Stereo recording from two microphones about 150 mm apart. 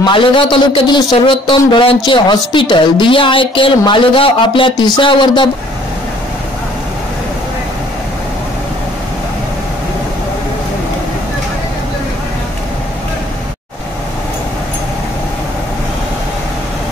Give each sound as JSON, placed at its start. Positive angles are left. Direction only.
{"t": 0.0, "sound": "a woman's voice", "side_deg": 35}